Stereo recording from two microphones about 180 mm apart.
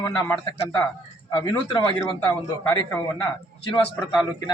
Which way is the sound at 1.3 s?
25° left (ahead or behind).